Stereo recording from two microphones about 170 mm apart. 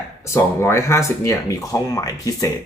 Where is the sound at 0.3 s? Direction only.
15° left (ahead or behind).